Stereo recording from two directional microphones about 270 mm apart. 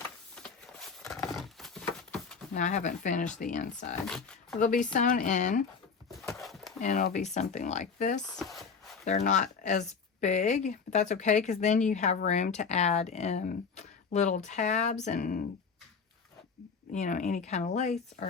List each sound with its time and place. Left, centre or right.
0.3 s horse: centre
2.5 s speech: left
4.0 s speech: centre
4.6 s speech: left
6.4 s a sound: centre
6.8 s speech: left
8.4 s chopping: centre
9.0 s speech: left
16.9 s speech: left